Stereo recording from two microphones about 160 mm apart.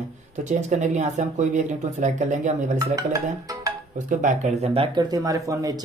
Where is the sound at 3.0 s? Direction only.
20° right (ahead or behind).